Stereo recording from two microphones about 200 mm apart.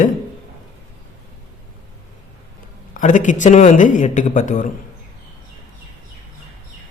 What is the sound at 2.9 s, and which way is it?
Speech, 40° left (ahead or behind).